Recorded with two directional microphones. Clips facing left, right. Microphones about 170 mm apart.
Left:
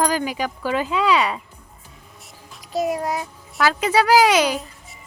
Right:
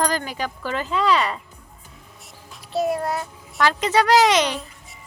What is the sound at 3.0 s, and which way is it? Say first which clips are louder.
Speech: left 1 dB; 15° left (ahead or behind).